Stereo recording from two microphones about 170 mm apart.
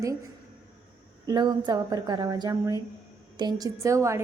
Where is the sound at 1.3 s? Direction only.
25° right (ahead or behind).